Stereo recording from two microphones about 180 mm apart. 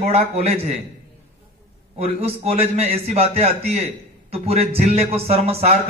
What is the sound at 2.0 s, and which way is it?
A man's voice, 35° right (ahead or behind).